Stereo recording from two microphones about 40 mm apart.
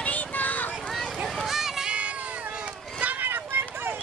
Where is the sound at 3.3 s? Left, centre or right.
Right.